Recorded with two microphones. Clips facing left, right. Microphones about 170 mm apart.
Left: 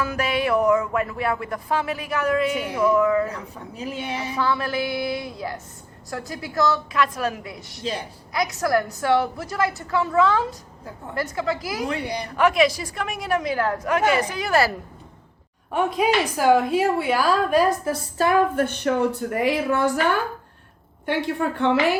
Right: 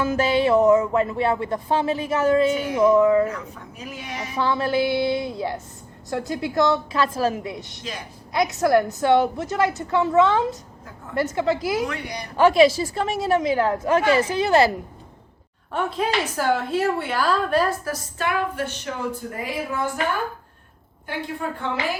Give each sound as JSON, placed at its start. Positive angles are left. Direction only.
{"t": 0.0, "sound": "a woman's voice", "side_deg": -25}
{"t": 3.2, "sound": "a woman's voice", "side_deg": 30}
{"t": 4.4, "sound": "a woman's voice", "side_deg": -25}
{"t": 11.9, "sound": "a woman's voice", "side_deg": 30}
{"t": 12.4, "sound": "a woman's voice", "side_deg": -30}
{"t": 15.7, "sound": "a woman's voice", "side_deg": 10}
{"t": 17.8, "sound": "a woman's voice", "side_deg": 30}
{"t": 18.5, "sound": "speech", "side_deg": 55}